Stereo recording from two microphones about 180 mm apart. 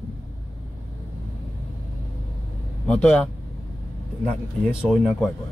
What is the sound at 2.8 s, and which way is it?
Speech, 5° left (ahead or behind).